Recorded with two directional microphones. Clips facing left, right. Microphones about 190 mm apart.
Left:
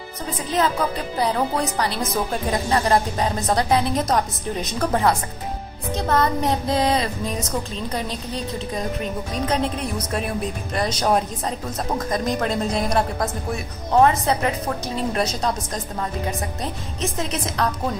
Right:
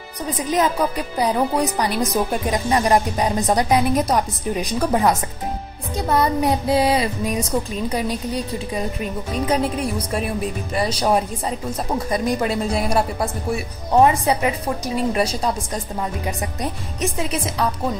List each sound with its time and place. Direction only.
0.4 s a woman's voice: 15° right (ahead or behind)